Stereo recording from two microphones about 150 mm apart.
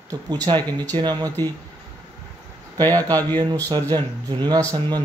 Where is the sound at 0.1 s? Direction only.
25° right (ahead or behind).